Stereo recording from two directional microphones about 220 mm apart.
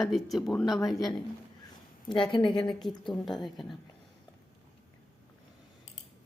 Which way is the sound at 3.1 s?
Centre (ahead or behind).